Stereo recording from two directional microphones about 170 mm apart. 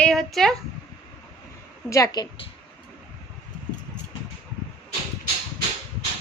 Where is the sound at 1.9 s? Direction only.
20° left (ahead or behind).